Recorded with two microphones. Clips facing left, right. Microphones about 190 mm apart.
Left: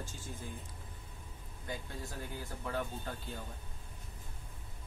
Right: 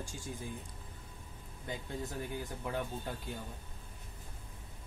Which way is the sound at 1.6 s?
20° right (ahead or behind).